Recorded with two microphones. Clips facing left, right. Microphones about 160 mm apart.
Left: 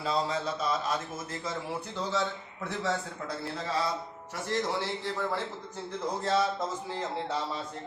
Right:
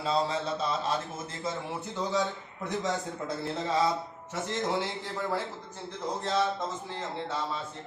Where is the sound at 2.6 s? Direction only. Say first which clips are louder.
Right 1 dB; 20° right (ahead or behind).